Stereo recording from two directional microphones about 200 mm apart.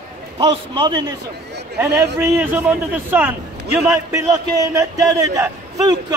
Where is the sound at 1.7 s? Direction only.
10° right (ahead or behind).